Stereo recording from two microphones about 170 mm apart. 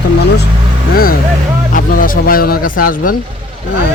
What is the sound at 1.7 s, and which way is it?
Speech, 55° left (ahead or behind).